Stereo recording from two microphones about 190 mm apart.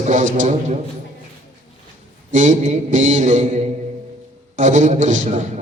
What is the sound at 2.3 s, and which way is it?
A man's voice, 40° right (ahead or behind).